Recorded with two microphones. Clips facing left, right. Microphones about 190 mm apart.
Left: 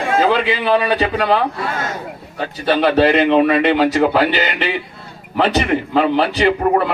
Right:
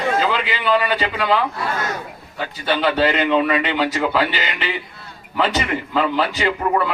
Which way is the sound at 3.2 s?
60° left (ahead or behind).